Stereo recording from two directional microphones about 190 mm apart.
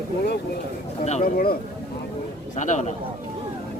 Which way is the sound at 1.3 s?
50° left (ahead or behind).